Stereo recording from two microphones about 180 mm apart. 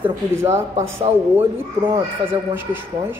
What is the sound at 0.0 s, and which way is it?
Speech, 15° right (ahead or behind).